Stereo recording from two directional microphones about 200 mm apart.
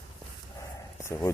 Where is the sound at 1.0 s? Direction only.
15° left (ahead or behind).